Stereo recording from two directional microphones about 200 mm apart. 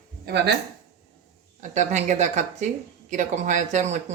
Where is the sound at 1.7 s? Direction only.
35° right (ahead or behind).